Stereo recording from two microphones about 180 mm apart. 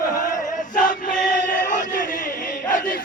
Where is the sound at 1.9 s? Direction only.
45° left (ahead or behind).